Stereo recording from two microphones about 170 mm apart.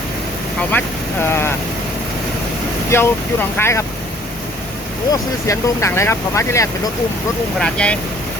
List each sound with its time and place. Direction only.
0.7 s speech: 10° left (ahead or behind)
2.9 s speech: 15° left (ahead or behind)
5.1 s speech: 20° left (ahead or behind)
7.6 s speech: 5° left (ahead or behind)